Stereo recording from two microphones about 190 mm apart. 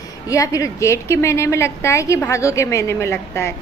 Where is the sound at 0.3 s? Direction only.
15° left (ahead or behind).